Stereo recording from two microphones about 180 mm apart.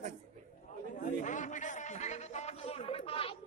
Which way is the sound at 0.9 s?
45° left (ahead or behind).